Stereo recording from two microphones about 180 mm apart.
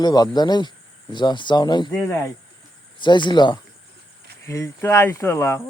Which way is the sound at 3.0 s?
25° left (ahead or behind).